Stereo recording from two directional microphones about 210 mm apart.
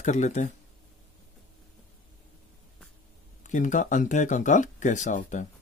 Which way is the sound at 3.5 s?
35° left (ahead or behind).